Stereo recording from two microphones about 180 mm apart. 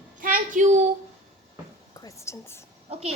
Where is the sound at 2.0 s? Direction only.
15° left (ahead or behind).